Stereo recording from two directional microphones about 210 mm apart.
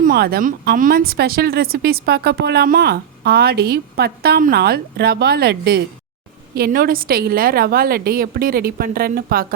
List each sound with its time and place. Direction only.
0.0 s speech: 45° right (ahead or behind)